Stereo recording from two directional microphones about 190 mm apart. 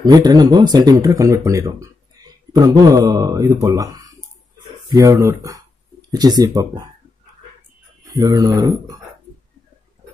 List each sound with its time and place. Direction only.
0.0 s speech: 20° right (ahead or behind)
8.1 s speech: 20° right (ahead or behind)